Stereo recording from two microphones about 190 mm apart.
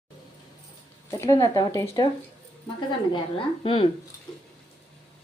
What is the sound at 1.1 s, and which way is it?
Speech, 15° left (ahead or behind).